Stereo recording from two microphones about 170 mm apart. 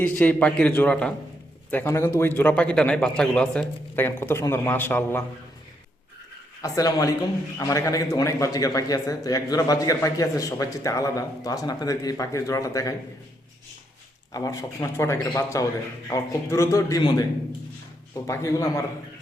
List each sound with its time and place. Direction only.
0.0 s speech: 10° left (ahead or behind)
6.6 s a man's voice: 20° left (ahead or behind)
14.3 s a man's voice: 20° left (ahead or behind)